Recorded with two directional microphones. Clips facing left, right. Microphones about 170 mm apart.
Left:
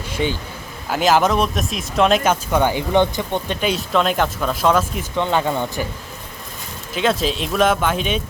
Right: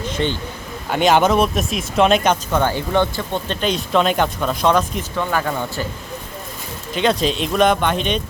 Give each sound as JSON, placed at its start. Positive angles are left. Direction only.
{"t": 0.1, "sound": "vehicle", "side_deg": 10}
{"t": 0.9, "sound": "speech", "side_deg": 0}
{"t": 5.1, "sound": "speech", "side_deg": 20}
{"t": 6.9, "sound": "speech", "side_deg": 0}